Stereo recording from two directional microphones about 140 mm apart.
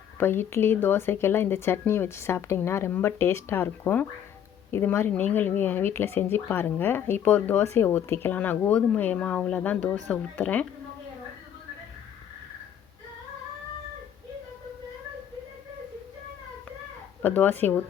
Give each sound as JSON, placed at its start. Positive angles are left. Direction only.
{"t": 0.2, "sound": "speech", "side_deg": 15}
{"t": 17.2, "sound": "speech", "side_deg": 10}